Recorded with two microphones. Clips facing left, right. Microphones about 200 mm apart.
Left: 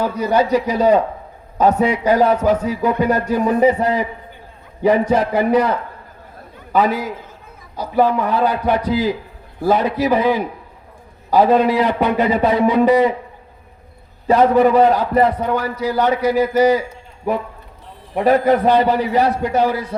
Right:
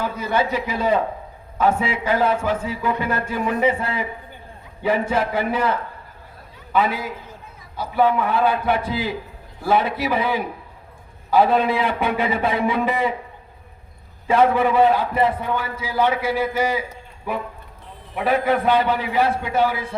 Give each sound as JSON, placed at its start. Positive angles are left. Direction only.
{"t": 0.0, "sound": "a man's voice", "side_deg": 40}
{"t": 6.7, "sound": "a man's voice", "side_deg": 40}
{"t": 14.3, "sound": "a man's voice", "side_deg": 40}
{"t": 18.1, "sound": "a man's voice", "side_deg": 40}